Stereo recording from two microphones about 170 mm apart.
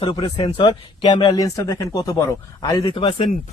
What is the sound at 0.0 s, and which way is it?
Speech, 30° left (ahead or behind).